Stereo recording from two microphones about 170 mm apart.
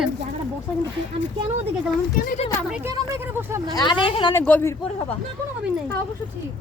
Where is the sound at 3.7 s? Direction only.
25° left (ahead or behind).